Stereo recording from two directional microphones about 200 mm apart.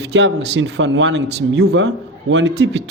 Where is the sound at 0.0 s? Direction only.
65° right (ahead or behind).